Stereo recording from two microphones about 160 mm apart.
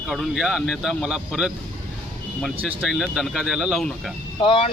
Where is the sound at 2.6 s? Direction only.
5° right (ahead or behind).